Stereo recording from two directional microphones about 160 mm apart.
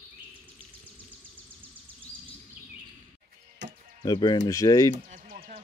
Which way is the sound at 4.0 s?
25° left (ahead or behind).